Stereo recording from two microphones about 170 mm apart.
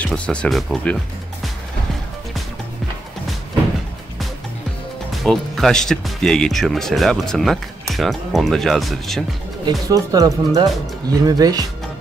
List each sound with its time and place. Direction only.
0.0 s speech: 5° left (ahead or behind)
5.2 s speech: centre (ahead or behind)
9.8 s speech: 20° right (ahead or behind)